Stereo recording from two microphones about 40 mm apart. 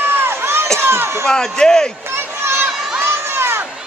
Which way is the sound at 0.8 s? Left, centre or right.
Right.